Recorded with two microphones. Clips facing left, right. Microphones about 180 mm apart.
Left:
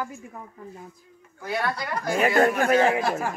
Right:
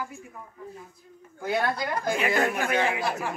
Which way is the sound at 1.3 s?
25° right (ahead or behind).